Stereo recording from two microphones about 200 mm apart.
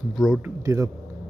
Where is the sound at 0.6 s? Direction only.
15° right (ahead or behind).